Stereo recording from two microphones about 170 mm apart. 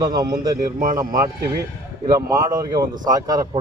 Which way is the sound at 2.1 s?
20° right (ahead or behind).